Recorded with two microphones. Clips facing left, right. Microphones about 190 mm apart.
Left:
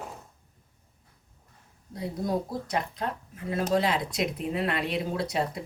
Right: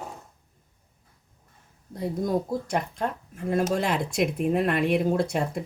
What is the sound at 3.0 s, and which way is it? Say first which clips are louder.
Speech: right 4 dB; 50° right (ahead or behind).